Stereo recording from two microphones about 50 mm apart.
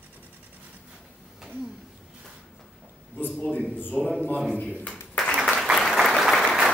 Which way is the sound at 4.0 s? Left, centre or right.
Right.